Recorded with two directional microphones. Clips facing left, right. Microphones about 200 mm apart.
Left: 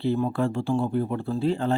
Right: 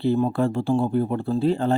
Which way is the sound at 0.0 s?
35° right (ahead or behind).